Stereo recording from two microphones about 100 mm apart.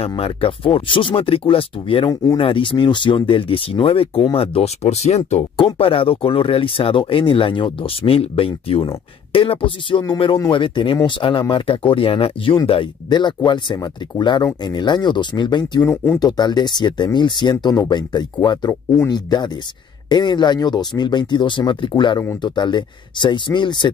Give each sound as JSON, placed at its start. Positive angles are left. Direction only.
{"t": 0.1, "sound": "speech", "side_deg": 65}
{"t": 5.8, "sound": "speech", "side_deg": 65}
{"t": 13.1, "sound": "speech", "side_deg": 50}
{"t": 15.8, "sound": "speech", "side_deg": 25}
{"t": 16.2, "sound": "speech", "side_deg": 45}